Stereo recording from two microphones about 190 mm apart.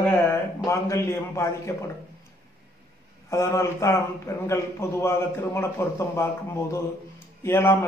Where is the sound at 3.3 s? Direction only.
15° left (ahead or behind).